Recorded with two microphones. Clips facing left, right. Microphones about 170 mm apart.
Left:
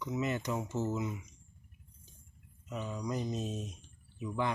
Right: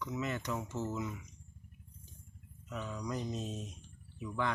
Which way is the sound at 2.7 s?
15° left (ahead or behind).